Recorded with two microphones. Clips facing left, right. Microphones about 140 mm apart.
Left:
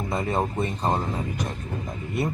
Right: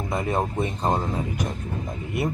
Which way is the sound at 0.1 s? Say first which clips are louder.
Right 1 dB; centre (ahead or behind).